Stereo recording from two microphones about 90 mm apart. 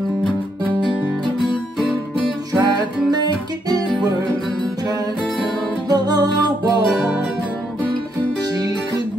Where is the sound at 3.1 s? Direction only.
50° right (ahead or behind).